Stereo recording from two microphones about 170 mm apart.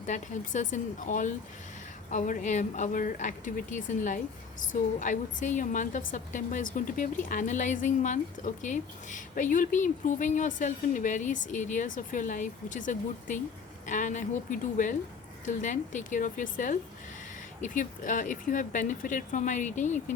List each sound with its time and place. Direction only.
0.0 s a woman's voice: 45° left (ahead or behind)